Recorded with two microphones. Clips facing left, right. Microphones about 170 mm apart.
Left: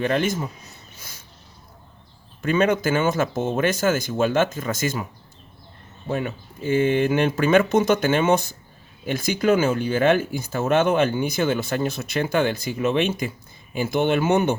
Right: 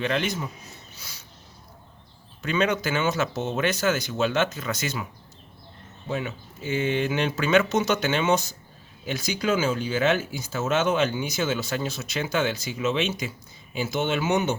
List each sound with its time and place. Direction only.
0.0 s speech: 45° left (ahead or behind)
0.9 s a sound: 50° left (ahead or behind)
2.4 s speech: 50° left (ahead or behind)
6.1 s speech: 50° left (ahead or behind)